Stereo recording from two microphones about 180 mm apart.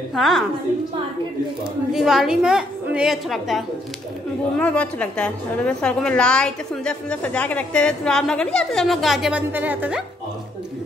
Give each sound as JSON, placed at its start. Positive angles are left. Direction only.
{"t": 0.1, "sound": "a woman's voice", "side_deg": 0}
{"t": 1.6, "sound": "a woman's voice", "side_deg": 0}